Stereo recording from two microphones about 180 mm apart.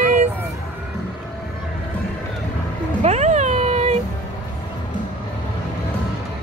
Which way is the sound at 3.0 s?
40° right (ahead or behind).